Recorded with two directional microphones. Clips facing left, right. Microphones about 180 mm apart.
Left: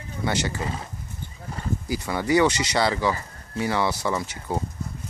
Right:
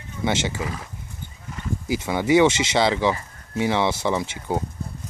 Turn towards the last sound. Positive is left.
turn(degrees=-20)  # may be behind; listen again after turning